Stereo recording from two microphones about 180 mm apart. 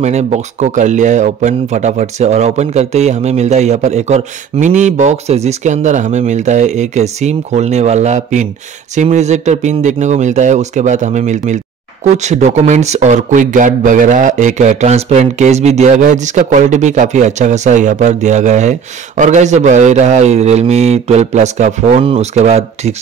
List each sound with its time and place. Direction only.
0.0 s speech: 40° right (ahead or behind)